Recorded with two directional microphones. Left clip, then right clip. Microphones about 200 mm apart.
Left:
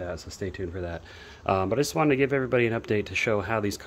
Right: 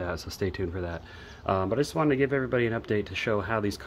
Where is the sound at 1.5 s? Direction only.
20° left (ahead or behind).